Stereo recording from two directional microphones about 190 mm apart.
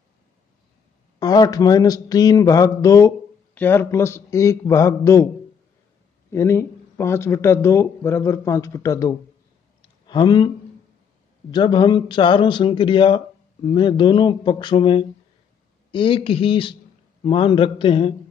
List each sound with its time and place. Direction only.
1.2 s speech: 20° left (ahead or behind)
6.3 s speech: 15° left (ahead or behind)
11.5 s speech: 25° left (ahead or behind)